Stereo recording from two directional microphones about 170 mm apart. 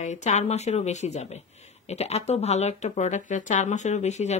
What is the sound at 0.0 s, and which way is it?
Speech, 45° left (ahead or behind).